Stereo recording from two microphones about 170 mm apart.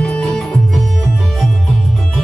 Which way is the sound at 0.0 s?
5° left (ahead or behind).